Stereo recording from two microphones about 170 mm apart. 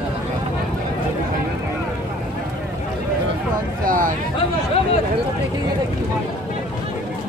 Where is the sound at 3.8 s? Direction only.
55° right (ahead or behind).